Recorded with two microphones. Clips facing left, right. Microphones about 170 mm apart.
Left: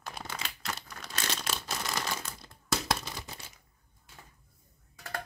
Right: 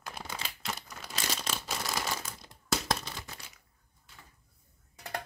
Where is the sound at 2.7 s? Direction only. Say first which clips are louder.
Even; 5° left (ahead or behind).